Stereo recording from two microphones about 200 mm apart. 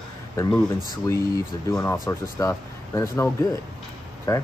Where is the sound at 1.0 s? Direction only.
15° left (ahead or behind).